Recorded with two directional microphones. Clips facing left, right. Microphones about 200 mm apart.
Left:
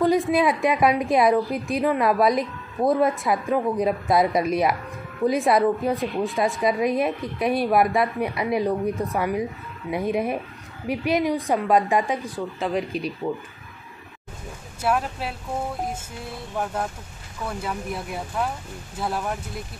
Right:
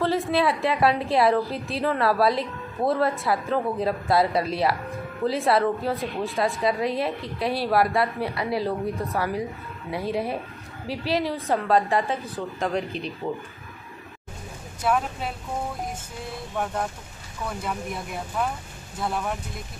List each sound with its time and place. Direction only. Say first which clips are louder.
0.0 s a woman's voice: left 3 dB; 15° left (ahead or behind)
14.8 s speech: left 1 dB; 5° left (ahead or behind)
18.9 s speech: left 1 dB; 5° left (ahead or behind)